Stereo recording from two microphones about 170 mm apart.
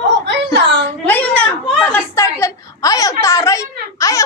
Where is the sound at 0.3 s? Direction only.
90° right.